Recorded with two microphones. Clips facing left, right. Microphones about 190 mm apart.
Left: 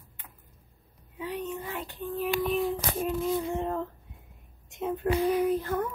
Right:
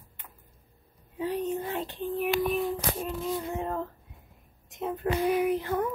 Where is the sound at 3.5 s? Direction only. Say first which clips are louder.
Left 1 dB; 5° right (ahead or behind).